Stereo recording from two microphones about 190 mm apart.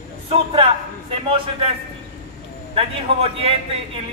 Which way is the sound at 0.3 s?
30° right (ahead or behind).